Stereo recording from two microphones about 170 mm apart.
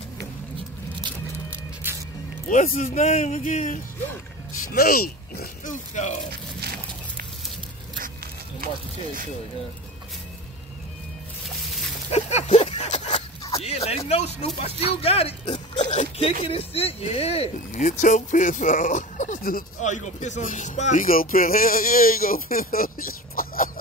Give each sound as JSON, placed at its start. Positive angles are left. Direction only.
{"t": 1.5, "sound": "music", "side_deg": -10}
{"t": 2.4, "sound": "speech", "side_deg": 50}
{"t": 4.6, "sound": "speech", "side_deg": 60}
{"t": 12.1, "sound": "speech", "side_deg": 40}